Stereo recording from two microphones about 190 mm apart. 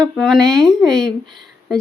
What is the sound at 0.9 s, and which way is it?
Speech, 20° right (ahead or behind).